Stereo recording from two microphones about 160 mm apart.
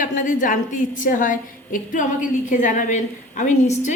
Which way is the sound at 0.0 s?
55° left (ahead or behind).